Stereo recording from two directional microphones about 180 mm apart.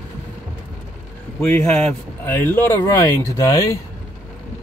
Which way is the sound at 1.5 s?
10° left (ahead or behind).